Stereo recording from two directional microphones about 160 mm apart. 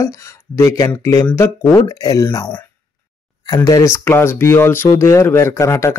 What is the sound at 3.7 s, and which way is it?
Speech, 20° left (ahead or behind).